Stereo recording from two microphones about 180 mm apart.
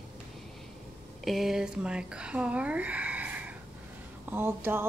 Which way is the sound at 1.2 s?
Centre (ahead or behind).